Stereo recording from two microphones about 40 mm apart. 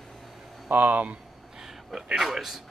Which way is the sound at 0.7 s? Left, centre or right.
Right.